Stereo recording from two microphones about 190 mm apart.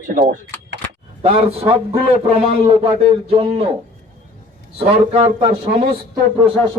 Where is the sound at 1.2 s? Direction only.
30° right (ahead or behind).